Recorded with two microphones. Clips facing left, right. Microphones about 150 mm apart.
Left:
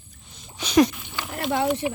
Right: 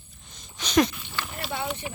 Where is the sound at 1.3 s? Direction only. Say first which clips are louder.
Left 10 dB; 75° left (ahead or behind).